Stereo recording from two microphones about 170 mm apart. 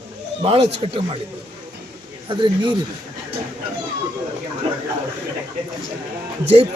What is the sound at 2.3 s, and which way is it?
Speech, 30° right (ahead or behind).